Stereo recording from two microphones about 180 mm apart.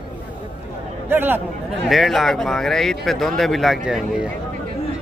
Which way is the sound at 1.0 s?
10° right (ahead or behind).